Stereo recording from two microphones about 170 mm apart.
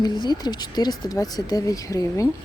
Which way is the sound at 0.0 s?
25° left (ahead or behind).